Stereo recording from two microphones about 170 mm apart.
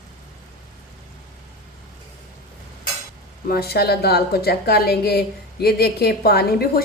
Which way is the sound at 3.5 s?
65° left (ahead or behind).